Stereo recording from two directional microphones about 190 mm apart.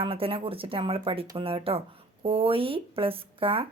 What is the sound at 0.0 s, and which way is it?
Speech, 30° right (ahead or behind).